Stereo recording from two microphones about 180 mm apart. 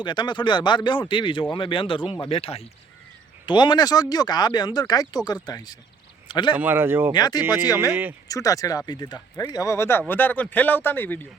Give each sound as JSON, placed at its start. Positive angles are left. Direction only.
{"t": 0.0, "sound": "speech", "side_deg": 25}
{"t": 6.6, "sound": "speech", "side_deg": -10}
{"t": 7.1, "sound": "speech", "side_deg": 25}